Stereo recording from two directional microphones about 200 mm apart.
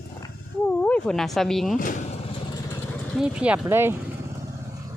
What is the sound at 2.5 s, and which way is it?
Vehicle, 15° left (ahead or behind).